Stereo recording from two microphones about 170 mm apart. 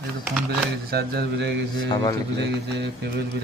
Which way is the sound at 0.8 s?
65° right (ahead or behind).